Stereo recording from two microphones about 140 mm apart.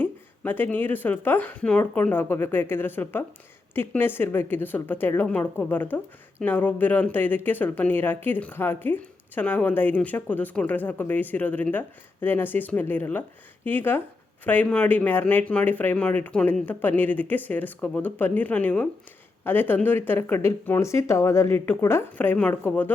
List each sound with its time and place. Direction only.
0.0 s a woman's voice: 15° left (ahead or behind)